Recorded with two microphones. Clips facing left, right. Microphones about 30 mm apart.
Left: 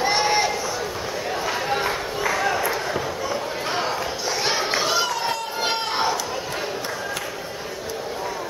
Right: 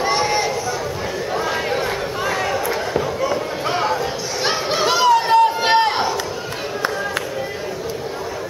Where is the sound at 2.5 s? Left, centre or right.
Centre.